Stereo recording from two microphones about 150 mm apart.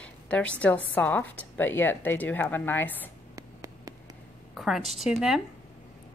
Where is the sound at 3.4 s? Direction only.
20° right (ahead or behind).